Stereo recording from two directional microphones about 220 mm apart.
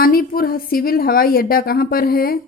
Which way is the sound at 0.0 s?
40° left (ahead or behind).